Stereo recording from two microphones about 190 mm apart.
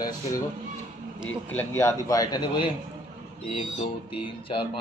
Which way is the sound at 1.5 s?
10° left (ahead or behind).